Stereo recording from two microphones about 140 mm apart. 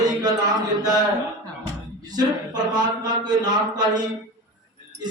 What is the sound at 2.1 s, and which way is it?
A man's voice, 30° right (ahead or behind).